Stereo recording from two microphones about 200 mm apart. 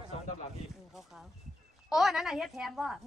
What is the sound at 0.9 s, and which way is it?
Speech, centre (ahead or behind).